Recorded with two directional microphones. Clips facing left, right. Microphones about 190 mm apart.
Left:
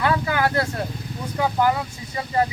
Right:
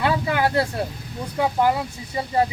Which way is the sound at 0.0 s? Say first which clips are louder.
Even; 25° right (ahead or behind).